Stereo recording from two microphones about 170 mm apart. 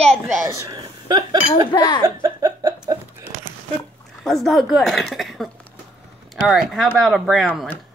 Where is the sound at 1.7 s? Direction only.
25° left (ahead or behind).